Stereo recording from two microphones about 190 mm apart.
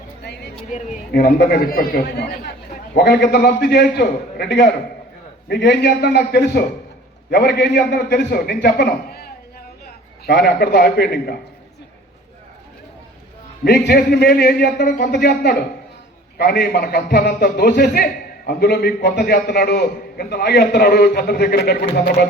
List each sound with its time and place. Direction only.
0.7 s speech: 40° left (ahead or behind)
1.1 s a man's voice: 50° left (ahead or behind)
13.7 s a man's voice: 55° left (ahead or behind)